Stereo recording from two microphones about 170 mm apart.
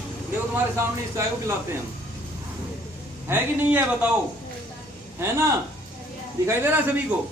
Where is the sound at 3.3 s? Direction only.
10° right (ahead or behind).